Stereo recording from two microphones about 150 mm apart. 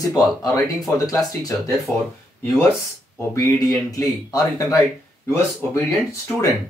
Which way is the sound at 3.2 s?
20° left (ahead or behind).